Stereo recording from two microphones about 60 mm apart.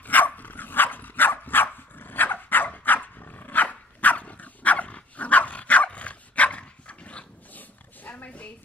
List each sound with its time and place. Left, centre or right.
0.0 s dog: left